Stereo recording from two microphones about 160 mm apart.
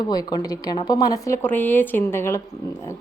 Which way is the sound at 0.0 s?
25° left (ahead or behind).